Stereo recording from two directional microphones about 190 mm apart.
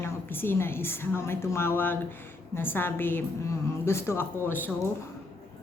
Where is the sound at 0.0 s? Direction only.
10° left (ahead or behind).